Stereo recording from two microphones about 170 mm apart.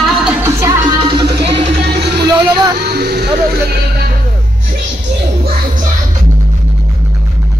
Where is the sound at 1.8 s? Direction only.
75° right (ahead or behind).